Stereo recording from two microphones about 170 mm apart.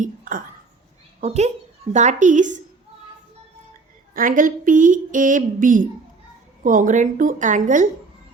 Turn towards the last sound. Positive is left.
turn(degrees=-50)  # may be behind; listen again after turning